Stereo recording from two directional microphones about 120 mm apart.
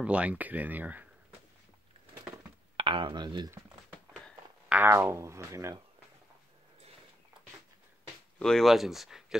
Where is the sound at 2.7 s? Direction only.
45° right (ahead or behind).